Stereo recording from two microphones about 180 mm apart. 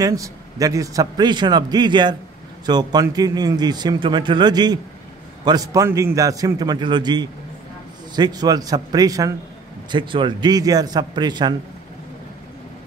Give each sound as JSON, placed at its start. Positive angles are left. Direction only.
{"t": 0.0, "sound": "a man's voice", "side_deg": -20}